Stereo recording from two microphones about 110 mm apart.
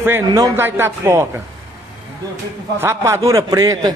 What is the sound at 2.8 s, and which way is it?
A man's voice, 25° right (ahead or behind).